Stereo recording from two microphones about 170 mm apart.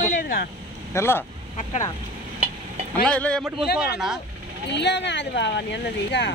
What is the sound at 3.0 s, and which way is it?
Speech, 5° left (ahead or behind).